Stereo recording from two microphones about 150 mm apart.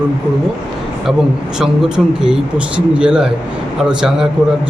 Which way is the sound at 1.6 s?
5° right (ahead or behind).